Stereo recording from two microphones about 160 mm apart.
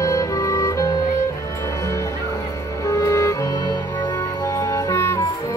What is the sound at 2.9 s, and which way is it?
Music, 20° left (ahead or behind).